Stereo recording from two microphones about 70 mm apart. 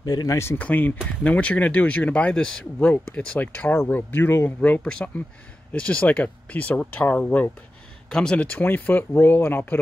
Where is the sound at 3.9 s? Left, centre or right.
Left.